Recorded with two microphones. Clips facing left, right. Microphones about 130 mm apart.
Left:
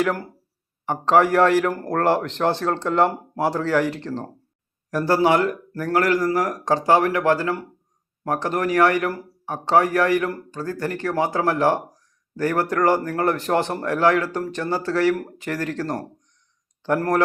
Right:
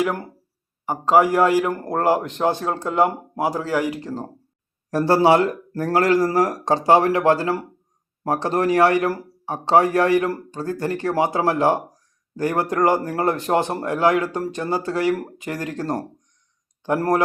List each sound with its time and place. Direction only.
0.0 s a man's voice: 20° right (ahead or behind)
0.9 s speech: 10° right (ahead or behind)
4.9 s a man's voice: 25° right (ahead or behind)
6.8 s a man's voice: 20° right (ahead or behind)